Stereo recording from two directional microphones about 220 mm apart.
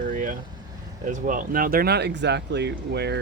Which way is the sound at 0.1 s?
40° right (ahead or behind).